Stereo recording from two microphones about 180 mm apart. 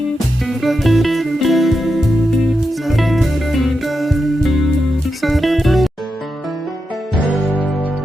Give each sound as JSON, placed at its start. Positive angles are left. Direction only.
{"t": 0.4, "sound": "music", "side_deg": 0}